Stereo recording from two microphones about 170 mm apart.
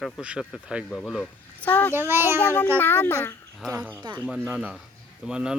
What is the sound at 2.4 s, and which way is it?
Speech, 10° left (ahead or behind).